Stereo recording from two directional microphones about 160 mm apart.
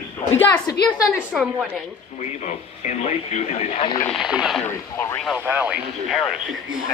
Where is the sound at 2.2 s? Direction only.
45° left (ahead or behind).